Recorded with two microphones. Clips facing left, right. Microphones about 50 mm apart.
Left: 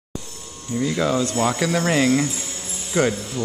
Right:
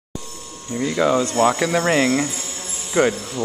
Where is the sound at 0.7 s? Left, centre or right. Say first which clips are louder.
Right 2 dB; right.